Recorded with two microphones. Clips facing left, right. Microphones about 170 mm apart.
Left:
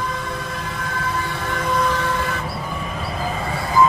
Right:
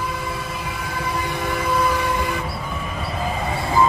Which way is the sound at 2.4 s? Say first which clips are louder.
Left 1 dB; centre (ahead or behind).